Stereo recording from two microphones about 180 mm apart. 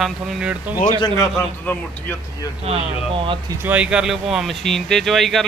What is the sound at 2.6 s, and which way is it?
Speech, 35° right (ahead or behind).